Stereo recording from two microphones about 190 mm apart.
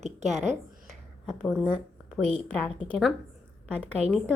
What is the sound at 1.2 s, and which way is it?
A woman's voice, 5° left (ahead or behind).